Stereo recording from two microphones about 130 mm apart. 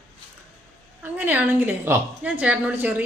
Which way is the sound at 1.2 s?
10° right (ahead or behind).